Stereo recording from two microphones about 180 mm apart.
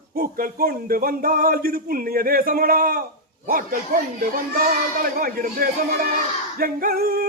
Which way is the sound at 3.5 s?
55° right (ahead or behind).